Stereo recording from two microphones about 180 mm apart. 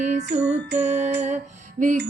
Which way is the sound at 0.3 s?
70° right (ahead or behind).